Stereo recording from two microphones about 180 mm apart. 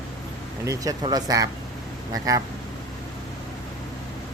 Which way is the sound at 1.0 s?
20° right (ahead or behind).